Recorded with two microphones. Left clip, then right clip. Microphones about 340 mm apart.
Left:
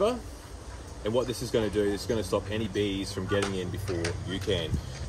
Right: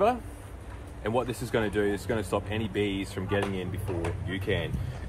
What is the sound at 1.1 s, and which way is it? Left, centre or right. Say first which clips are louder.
Speech: left 1 dB; centre.